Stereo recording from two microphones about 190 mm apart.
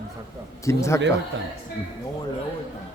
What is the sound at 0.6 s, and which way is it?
Speech, 15° left (ahead or behind).